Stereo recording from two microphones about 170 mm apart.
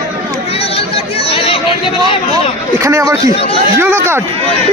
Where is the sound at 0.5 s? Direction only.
35° left (ahead or behind).